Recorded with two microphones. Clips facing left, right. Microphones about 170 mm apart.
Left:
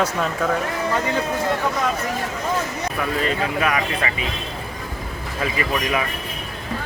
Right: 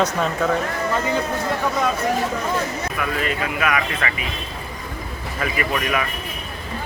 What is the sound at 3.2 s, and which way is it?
Speech, 35° left (ahead or behind).